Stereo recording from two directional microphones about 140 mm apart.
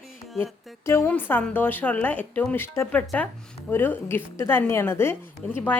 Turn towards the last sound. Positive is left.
turn(degrees=15)  # may be behind; listen again after turning